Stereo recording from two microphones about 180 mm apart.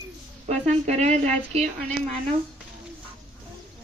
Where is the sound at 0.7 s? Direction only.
40° right (ahead or behind).